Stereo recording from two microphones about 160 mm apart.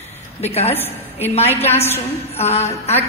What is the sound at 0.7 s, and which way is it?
Speech, 15° left (ahead or behind).